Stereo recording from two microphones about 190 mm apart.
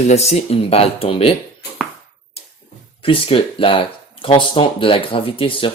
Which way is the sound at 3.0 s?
30° left (ahead or behind).